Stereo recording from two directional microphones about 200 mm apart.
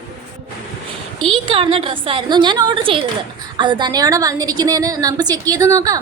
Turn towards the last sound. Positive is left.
turn(degrees=-15)  # may be behind; listen again after turning